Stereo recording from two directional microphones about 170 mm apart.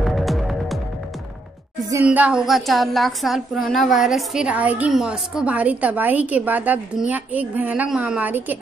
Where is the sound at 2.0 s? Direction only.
10° right (ahead or behind).